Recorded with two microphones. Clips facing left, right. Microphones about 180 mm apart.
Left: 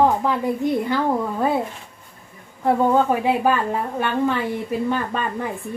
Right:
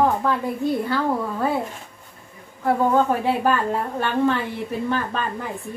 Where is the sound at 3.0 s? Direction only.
15° left (ahead or behind).